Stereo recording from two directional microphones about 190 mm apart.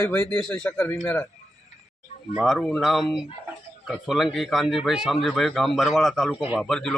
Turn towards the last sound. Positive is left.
turn(degrees=5)  # may be behind; listen again after turning